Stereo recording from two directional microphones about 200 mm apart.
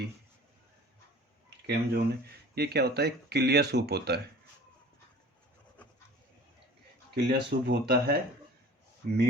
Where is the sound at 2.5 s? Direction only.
55° right (ahead or behind).